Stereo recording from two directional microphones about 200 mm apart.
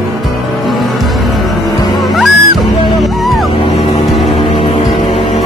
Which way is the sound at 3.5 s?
30° left (ahead or behind).